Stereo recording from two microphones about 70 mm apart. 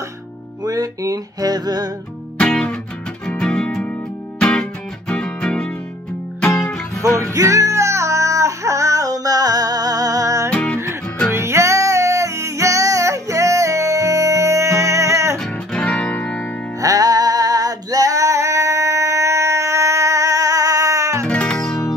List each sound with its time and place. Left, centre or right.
0.7 s a sound: right
2.3 s music: centre
7.0 s music: right
10.5 s music: centre
11.3 s music: right
15.3 s music: centre
16.8 s female singing: right
21.3 s music: centre